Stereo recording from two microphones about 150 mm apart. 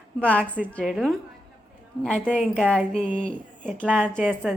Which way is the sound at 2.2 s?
10° right (ahead or behind).